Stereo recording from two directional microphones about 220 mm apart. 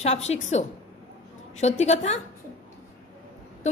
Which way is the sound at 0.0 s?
30° left (ahead or behind).